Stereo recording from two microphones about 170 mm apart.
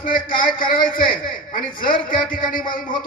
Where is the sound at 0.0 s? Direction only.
55° left (ahead or behind).